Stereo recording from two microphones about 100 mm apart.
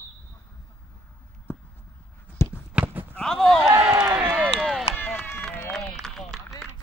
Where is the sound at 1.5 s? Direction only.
20° left (ahead or behind).